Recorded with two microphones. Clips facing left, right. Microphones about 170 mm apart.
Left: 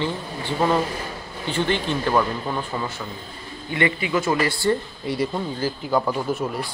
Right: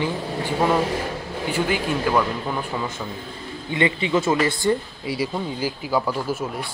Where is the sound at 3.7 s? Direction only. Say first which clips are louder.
Right 1 dB; 20° right (ahead or behind).